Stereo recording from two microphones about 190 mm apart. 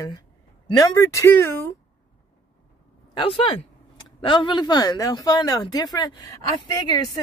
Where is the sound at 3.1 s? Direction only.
30° left (ahead or behind).